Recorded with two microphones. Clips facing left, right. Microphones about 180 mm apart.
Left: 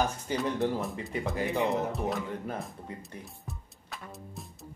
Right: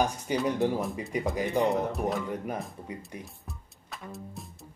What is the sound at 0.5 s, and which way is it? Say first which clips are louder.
Speech: right 2 dB; 15° right (ahead or behind).